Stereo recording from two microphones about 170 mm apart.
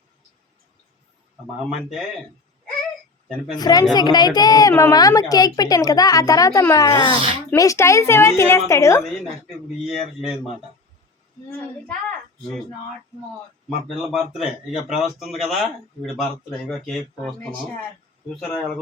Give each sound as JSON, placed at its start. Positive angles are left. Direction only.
{"t": 3.2, "sound": "a woman's voice", "side_deg": -5}
{"t": 3.6, "sound": "a woman's voice", "side_deg": 25}
{"t": 9.9, "sound": "speech", "side_deg": 0}
{"t": 13.8, "sound": "speech", "side_deg": 0}